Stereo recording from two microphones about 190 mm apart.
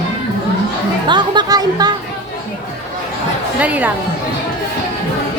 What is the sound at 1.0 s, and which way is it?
Speech, 25° right (ahead or behind).